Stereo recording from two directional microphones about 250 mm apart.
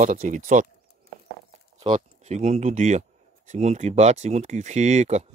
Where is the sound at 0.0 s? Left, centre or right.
Right.